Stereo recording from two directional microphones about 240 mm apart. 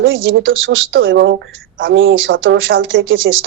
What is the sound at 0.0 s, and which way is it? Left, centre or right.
Speech, right.